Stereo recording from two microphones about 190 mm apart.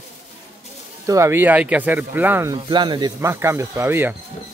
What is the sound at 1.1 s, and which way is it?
Speech, 15° right (ahead or behind).